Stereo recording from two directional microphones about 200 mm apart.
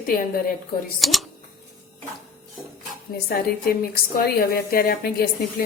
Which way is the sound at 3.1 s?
50° left (ahead or behind).